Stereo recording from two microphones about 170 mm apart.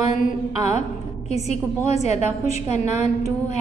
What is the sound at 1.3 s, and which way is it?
A woman's voice, 40° left (ahead or behind).